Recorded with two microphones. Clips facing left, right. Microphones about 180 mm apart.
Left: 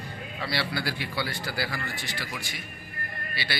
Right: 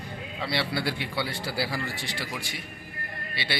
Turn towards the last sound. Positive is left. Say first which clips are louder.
# right 1 dB
turn(degrees=-25)  # may be behind; listen again after turning